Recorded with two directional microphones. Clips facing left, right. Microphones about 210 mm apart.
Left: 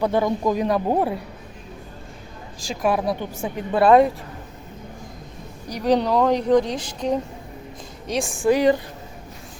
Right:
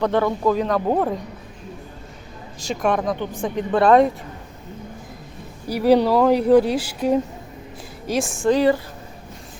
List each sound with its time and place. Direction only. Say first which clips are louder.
0.0 s a woman's voice: right 1 dB; 15° left (ahead or behind)
2.6 s a woman's voice: right 1 dB; centre (ahead or behind)
5.6 s speech: right 4 dB; 5° right (ahead or behind)
8.4 s a woman's voice: even; 15° left (ahead or behind)